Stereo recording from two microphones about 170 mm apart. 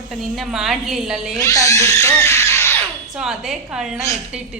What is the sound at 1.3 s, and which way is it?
Speech, 20° left (ahead or behind).